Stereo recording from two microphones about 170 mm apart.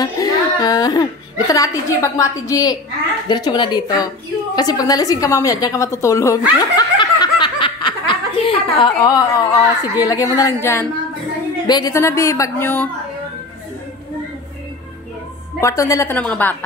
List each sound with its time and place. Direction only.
0.0 s a sound: 20° left (ahead or behind)
1.5 s a woman's voice: 20° left (ahead or behind)
6.7 s snicker: 25° left (ahead or behind)
11.6 s a woman's voice: 25° left (ahead or behind)
15.6 s a woman's voice: 20° left (ahead or behind)